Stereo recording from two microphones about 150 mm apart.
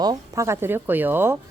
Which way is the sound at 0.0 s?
25° right (ahead or behind).